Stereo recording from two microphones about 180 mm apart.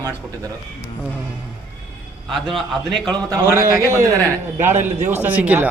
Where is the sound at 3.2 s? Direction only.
15° right (ahead or behind).